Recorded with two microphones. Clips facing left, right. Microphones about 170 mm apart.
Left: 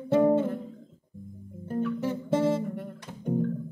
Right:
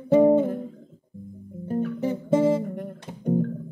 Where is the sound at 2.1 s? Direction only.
15° right (ahead or behind).